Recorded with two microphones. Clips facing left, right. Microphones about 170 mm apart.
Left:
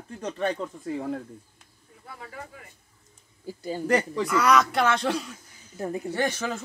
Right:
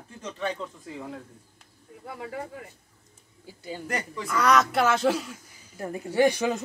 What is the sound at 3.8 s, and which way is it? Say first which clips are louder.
Speech: left 9 dB; 90° left.